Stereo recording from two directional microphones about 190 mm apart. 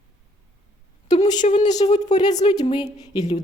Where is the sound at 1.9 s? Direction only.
20° left (ahead or behind).